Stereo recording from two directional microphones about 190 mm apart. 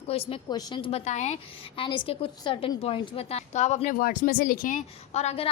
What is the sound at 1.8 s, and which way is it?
A woman's voice, 25° left (ahead or behind).